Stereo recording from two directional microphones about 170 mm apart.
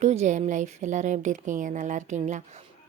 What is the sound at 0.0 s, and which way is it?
A woman's voice, 45° right (ahead or behind).